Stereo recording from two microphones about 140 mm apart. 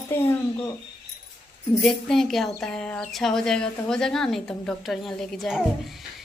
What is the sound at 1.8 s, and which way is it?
A woman's voice, 5° left (ahead or behind).